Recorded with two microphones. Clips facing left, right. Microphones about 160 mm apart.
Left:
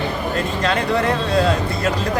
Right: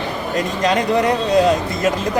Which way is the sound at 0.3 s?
15° right (ahead or behind).